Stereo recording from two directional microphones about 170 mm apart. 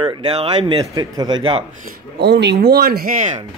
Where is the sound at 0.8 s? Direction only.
20° right (ahead or behind).